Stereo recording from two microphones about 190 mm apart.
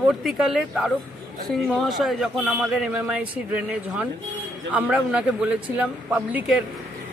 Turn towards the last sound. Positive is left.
turn(degrees=-5)  # may be behind; listen again after turning